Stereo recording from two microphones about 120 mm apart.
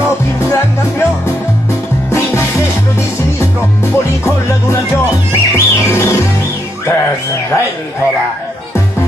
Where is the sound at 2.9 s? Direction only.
25° left (ahead or behind).